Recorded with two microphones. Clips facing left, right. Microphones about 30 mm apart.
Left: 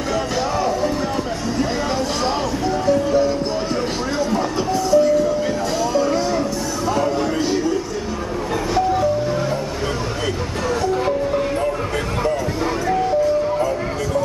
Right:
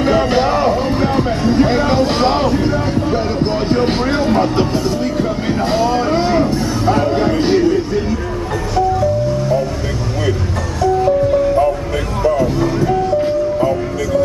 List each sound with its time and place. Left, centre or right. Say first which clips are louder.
1.5 s vehicle: right 8 dB; right
2.9 s music: left 1 dB; right
4.9 s music: left 4 dB; right
5.9 s a sound: right 4 dB; right